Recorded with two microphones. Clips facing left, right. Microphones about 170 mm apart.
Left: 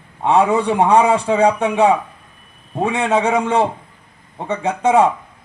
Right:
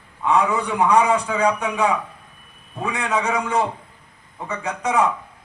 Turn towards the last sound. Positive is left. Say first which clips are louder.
# left 7 dB
turn(degrees=25)  # may be behind; listen again after turning